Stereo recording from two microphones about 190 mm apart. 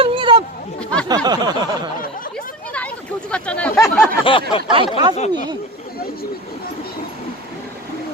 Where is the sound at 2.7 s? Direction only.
5° left (ahead or behind).